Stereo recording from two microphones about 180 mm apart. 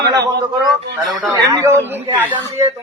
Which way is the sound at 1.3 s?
15° right (ahead or behind).